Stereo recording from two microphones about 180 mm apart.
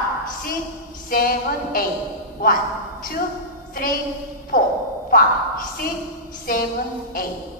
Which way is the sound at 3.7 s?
50° left (ahead or behind).